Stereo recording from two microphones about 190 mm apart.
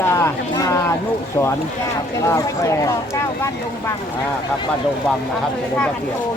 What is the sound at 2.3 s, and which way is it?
Speech, 15° left (ahead or behind).